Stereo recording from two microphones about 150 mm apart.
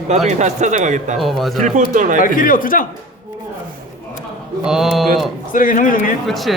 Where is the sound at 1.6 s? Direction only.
60° right (ahead or behind).